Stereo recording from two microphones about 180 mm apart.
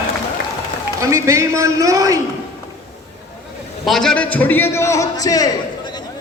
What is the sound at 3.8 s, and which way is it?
A man's voice, 5° left (ahead or behind).